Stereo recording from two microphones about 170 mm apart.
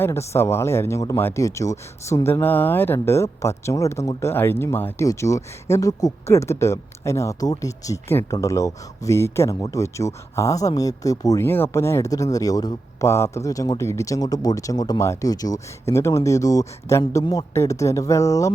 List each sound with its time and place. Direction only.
0.0 s speech: 15° left (ahead or behind)